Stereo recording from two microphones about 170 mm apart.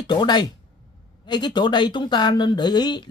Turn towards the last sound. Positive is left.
turn(degrees=25)  # may be behind; listen again after turning